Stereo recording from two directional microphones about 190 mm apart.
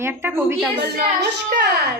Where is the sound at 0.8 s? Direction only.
60° right (ahead or behind).